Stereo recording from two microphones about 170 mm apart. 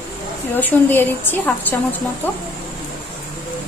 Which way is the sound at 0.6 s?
10° left (ahead or behind).